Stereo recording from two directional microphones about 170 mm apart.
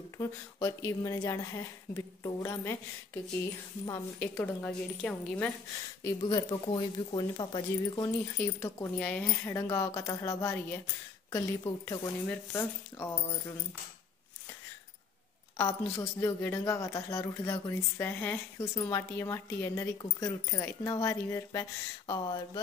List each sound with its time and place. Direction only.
0.2 s speech: 20° left (ahead or behind)
4.2 s speech: 10° left (ahead or behind)
6.0 s speech: 25° left (ahead or behind)
8.9 s speech: 5° left (ahead or behind)
15.5 s speech: 15° left (ahead or behind)